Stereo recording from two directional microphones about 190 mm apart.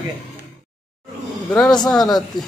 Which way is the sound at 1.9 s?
Centre (ahead or behind).